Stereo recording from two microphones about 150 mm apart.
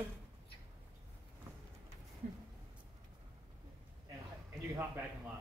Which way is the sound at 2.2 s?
55° right (ahead or behind).